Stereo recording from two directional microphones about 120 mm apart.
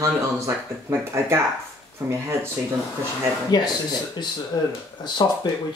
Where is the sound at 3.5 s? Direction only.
35° left (ahead or behind).